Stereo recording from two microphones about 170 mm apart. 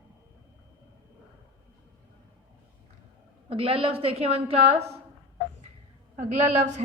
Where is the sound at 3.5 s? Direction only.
35° right (ahead or behind).